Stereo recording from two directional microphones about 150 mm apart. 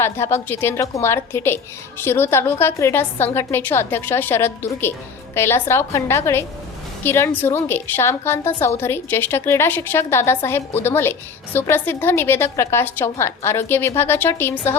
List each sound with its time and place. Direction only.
0.0 s a woman's voice: 15° left (ahead or behind)